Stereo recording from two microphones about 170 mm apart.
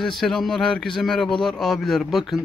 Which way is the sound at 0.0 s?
Centre (ahead or behind).